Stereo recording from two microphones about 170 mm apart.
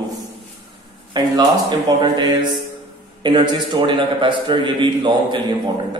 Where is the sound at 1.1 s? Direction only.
25° right (ahead or behind).